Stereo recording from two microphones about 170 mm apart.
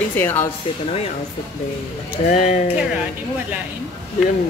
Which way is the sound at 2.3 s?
45° left (ahead or behind).